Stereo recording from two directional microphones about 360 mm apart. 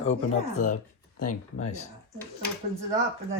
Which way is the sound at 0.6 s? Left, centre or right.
Left.